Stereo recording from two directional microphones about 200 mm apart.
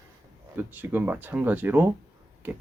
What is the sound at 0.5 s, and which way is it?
Speech, 10° right (ahead or behind).